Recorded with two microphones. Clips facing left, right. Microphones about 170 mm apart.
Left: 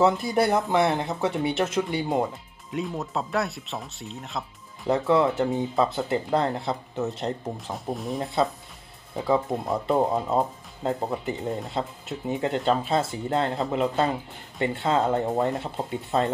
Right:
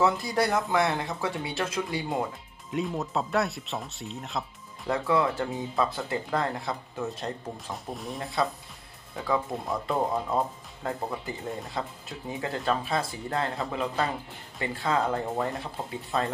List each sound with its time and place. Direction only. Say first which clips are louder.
0.0 s speech: left 4 dB; 25° left (ahead or behind)
2.7 s speech: even; centre (ahead or behind)
4.8 s speech: left 4 dB; 25° left (ahead or behind)
7.9 s speech: left 8 dB; centre (ahead or behind)
9.8 s speech: left 5 dB; 20° left (ahead or behind)